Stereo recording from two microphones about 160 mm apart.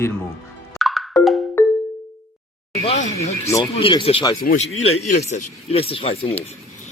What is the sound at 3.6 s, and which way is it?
Speech, 30° left (ahead or behind).